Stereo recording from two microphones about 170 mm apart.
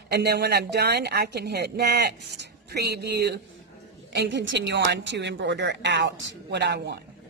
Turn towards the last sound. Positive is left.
turn(degrees=-80)